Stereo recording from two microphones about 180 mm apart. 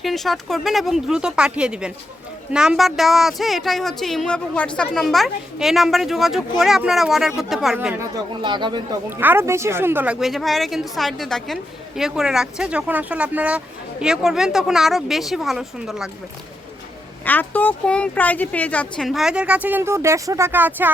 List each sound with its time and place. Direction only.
0.0 s speech: centre (ahead or behind)
7.9 s speech: 25° right (ahead or behind)
9.0 s speech: 10° right (ahead or behind)
17.2 s speech: 10° left (ahead or behind); by 20.9 s 10° right (ahead or behind)